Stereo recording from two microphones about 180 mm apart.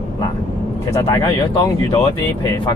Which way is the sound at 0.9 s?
20° left (ahead or behind).